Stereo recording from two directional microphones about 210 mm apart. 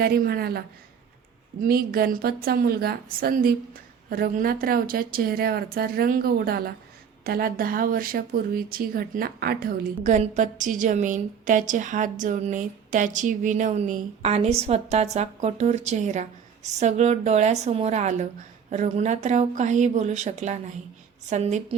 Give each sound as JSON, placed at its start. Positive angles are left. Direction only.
{"t": 0.0, "sound": "a woman's voice", "side_deg": -50}
{"t": 1.6, "sound": "a woman's voice", "side_deg": -45}